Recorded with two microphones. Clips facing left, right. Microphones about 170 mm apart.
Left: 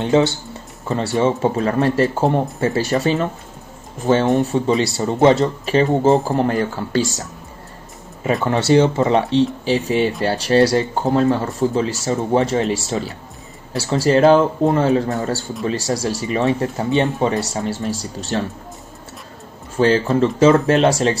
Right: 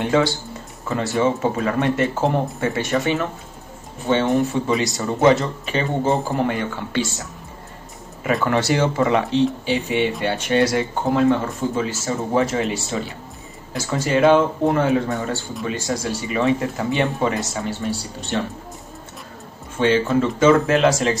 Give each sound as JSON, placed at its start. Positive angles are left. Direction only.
{"t": 0.0, "sound": "a sound", "side_deg": 25}
{"t": 0.8, "sound": "speech", "side_deg": 30}
{"t": 4.5, "sound": "speech", "side_deg": 30}
{"t": 8.2, "sound": "speech", "side_deg": 25}
{"t": 9.7, "sound": "speech", "side_deg": 40}
{"t": 19.8, "sound": "speech", "side_deg": 40}